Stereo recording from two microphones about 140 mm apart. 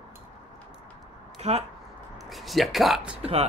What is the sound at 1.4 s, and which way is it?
Speech, 50° right (ahead or behind).